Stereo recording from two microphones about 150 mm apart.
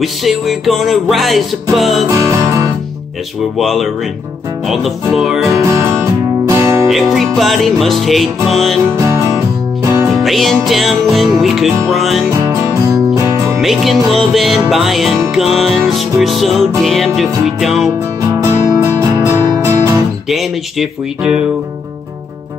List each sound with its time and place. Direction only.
0.0 s music: centre (ahead or behind)
2.0 s music: 20° right (ahead or behind)
3.5 s music: centre (ahead or behind)
5.1 s music: centre (ahead or behind)
5.5 s music: 20° right (ahead or behind)
6.9 s music: centre (ahead or behind)
8.9 s music: 20° right (ahead or behind)
10.2 s music: centre (ahead or behind)
12.3 s music: 20° right (ahead or behind)
13.6 s music: centre (ahead or behind)
18.4 s music: 20° right (ahead or behind)
20.2 s music: centre (ahead or behind)